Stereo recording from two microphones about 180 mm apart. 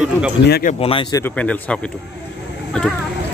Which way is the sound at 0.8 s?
30° left (ahead or behind).